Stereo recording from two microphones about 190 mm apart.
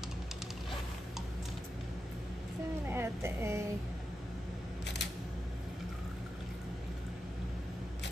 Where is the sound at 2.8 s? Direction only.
10° right (ahead or behind).